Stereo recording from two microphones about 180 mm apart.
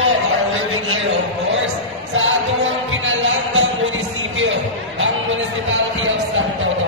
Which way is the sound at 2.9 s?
90° right.